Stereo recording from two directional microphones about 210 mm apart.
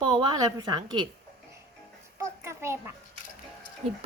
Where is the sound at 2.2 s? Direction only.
15° right (ahead or behind).